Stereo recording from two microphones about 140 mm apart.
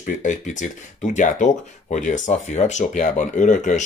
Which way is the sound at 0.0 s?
65° left (ahead or behind).